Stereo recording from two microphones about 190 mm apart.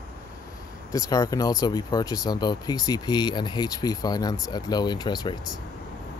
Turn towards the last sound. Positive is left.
turn(degrees=20)  # may be behind; listen again after turning